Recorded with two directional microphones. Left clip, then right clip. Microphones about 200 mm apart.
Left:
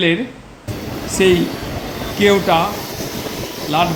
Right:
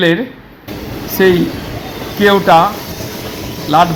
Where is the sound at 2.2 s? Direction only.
15° right (ahead or behind).